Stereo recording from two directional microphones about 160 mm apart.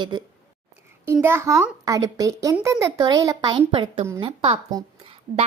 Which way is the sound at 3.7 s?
30° right (ahead or behind).